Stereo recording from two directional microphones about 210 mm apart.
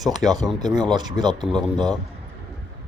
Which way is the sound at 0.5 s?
20° right (ahead or behind).